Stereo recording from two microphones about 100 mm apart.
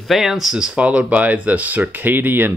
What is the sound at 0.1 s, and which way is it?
Speech, 5° right (ahead or behind).